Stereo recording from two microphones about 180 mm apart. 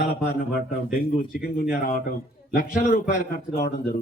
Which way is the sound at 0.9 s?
55° left (ahead or behind).